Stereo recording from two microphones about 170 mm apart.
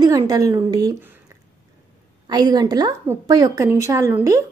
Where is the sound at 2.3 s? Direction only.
25° right (ahead or behind).